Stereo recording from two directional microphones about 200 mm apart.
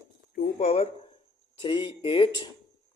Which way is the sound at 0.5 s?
30° left (ahead or behind).